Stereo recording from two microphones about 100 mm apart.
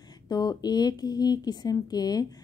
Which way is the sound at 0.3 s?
40° left (ahead or behind).